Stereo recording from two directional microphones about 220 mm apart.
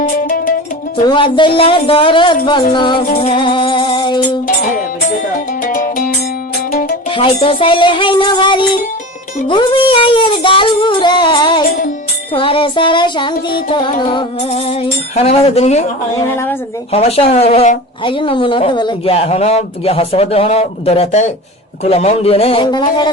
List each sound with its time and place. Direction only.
0.2 s music: 40° left (ahead or behind)
1.0 s a woman's voice: 20° left (ahead or behind)
3.2 s music: 25° left (ahead or behind)
5.6 s music: 40° left (ahead or behind)
7.1 s a woman's voice: 25° left (ahead or behind)
12.3 s music: 25° left (ahead or behind)
14.0 s a woman's voice: 20° left (ahead or behind)
16.3 s a woman's voice: 10° left (ahead or behind)
16.9 s a woman's voice: 25° left (ahead or behind)